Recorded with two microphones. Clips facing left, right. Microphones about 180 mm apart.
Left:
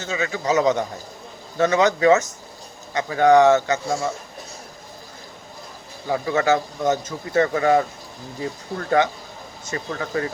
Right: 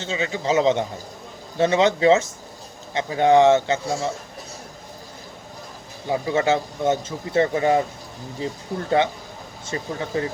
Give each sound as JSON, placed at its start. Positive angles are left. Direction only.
{"t": 0.0, "sound": "speech", "side_deg": -25}
{"t": 6.1, "sound": "speech", "side_deg": -20}